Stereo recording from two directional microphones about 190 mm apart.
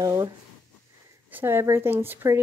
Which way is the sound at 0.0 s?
15° right (ahead or behind).